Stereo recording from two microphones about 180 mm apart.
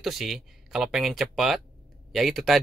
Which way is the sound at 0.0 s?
Centre (ahead or behind).